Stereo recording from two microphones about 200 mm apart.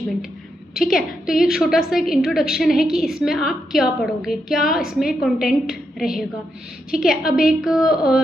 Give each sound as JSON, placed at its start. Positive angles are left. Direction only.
{"t": 0.7, "sound": "a woman's voice", "side_deg": 0}